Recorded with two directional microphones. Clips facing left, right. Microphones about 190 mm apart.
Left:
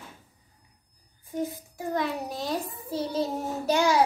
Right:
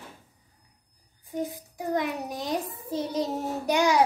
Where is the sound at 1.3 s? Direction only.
15° right (ahead or behind).